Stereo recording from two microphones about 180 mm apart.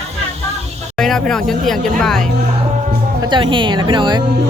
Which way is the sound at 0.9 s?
Centre (ahead or behind).